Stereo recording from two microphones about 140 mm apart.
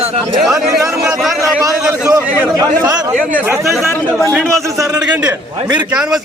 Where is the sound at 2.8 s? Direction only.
25° right (ahead or behind).